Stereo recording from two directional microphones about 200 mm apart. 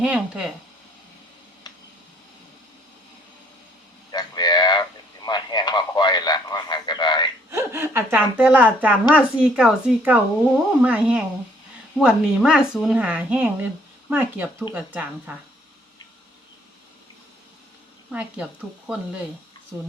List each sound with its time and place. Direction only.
0.0 s speech: 5° right (ahead or behind)
4.1 s radio: 20° left (ahead or behind)
7.5 s speech: 10° right (ahead or behind)
18.1 s speech: 5° right (ahead or behind)